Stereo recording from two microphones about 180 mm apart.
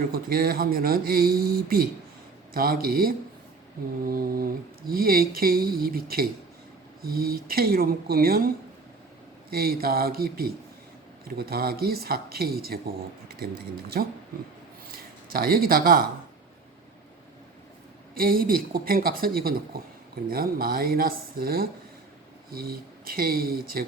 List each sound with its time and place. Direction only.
0.1 s speech: 55° right (ahead or behind)
9.6 s speech: 55° right (ahead or behind)
18.2 s speech: 55° right (ahead or behind)